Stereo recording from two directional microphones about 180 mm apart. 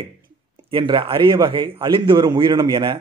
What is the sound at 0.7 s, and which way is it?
A man's voice, 30° right (ahead or behind).